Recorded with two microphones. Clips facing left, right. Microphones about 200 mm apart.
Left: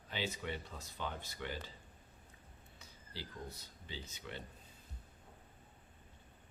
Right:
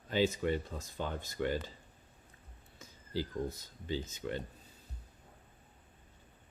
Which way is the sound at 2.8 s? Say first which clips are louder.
Right 13 dB; 45° right (ahead or behind).